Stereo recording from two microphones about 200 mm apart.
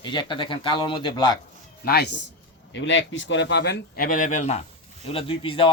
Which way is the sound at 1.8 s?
50° left (ahead or behind).